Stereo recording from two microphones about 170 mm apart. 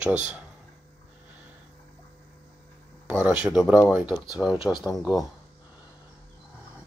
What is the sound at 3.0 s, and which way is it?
Speech, 5° right (ahead or behind).